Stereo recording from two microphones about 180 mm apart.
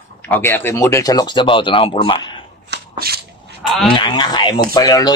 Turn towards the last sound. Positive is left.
turn(degrees=20)  # may be behind; listen again after turning